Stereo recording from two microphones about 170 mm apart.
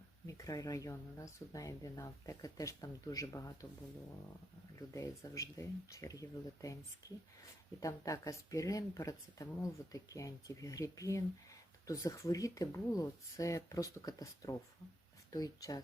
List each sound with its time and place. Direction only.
0.3 s speech: 20° left (ahead or behind)
4.9 s speech: 20° left (ahead or behind)
7.8 s speech: 20° left (ahead or behind)